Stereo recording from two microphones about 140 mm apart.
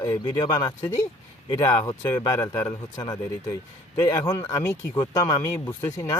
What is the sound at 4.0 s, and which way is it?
Speech, 30° left (ahead or behind).